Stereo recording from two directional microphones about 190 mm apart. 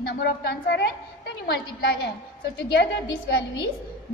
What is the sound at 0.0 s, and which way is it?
A woman's voice, 55° left (ahead or behind).